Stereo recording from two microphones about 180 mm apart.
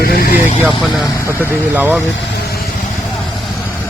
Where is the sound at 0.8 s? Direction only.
Centre (ahead or behind).